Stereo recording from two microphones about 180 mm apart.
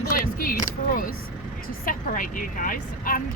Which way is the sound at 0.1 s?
50° left (ahead or behind).